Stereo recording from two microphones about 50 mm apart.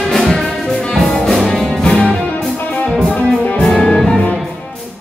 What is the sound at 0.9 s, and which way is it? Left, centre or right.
Music, centre.